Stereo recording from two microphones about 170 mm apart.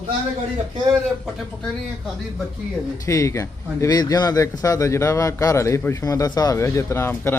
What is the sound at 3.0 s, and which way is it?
Speech, 20° left (ahead or behind).